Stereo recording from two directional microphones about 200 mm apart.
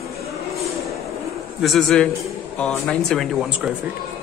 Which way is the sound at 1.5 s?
Centre (ahead or behind).